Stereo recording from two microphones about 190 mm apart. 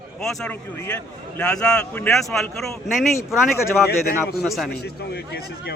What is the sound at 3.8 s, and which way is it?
Speech, 55° left (ahead or behind).